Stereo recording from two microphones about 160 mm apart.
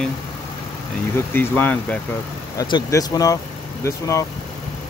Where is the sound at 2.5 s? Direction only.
25° left (ahead or behind).